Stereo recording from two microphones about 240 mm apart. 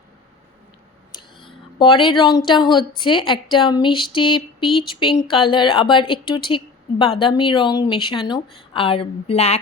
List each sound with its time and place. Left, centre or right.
1.8 s a woman's voice: left